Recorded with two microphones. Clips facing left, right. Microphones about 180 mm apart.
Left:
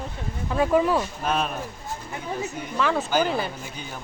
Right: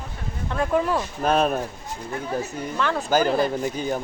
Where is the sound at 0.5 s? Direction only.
5° left (ahead or behind).